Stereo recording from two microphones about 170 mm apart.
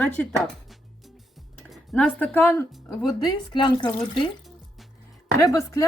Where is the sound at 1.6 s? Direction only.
5° left (ahead or behind).